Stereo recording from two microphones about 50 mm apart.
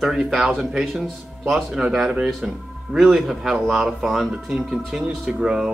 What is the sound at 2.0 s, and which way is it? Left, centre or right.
A man's voice, centre.